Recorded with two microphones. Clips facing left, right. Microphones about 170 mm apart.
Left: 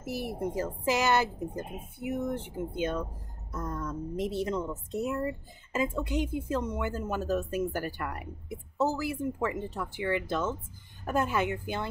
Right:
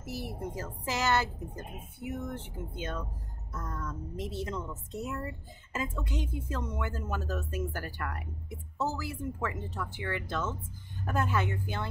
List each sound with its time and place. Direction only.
0.0 s a woman's voice: 15° left (ahead or behind)